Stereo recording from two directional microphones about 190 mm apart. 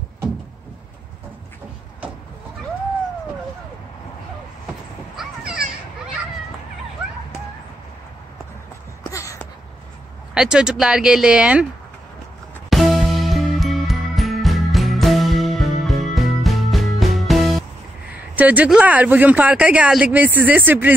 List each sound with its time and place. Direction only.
5.1 s children playing: 5° right (ahead or behind)
9.1 s a sound: 15° left (ahead or behind)
10.3 s speech: 5° right (ahead or behind)
12.6 s music: centre (ahead or behind)
18.3 s speech: 10° right (ahead or behind)